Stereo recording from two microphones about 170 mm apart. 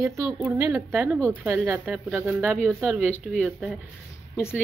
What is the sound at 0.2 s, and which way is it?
Speech, 5° right (ahead or behind).